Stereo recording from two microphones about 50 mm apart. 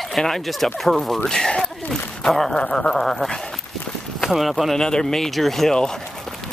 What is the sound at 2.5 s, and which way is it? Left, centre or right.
Speech, centre.